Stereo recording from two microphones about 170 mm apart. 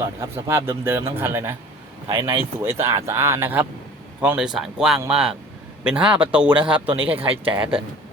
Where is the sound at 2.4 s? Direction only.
15° right (ahead or behind).